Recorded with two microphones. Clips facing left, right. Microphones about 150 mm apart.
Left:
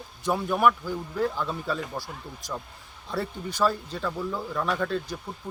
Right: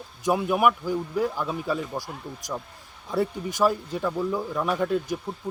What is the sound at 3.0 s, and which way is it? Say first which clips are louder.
Speech: right 5 dB; 15° right (ahead or behind).